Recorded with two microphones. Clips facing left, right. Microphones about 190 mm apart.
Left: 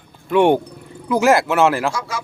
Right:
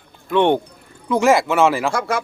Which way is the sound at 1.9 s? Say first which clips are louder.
Right 6 dB; 60° right (ahead or behind).